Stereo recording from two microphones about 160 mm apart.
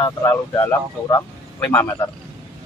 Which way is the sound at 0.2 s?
20° left (ahead or behind).